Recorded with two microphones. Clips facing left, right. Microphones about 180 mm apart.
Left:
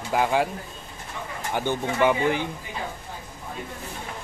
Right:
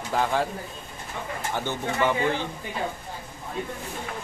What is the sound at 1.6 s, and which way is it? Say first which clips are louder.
Speech: left 4 dB; 15° left (ahead or behind).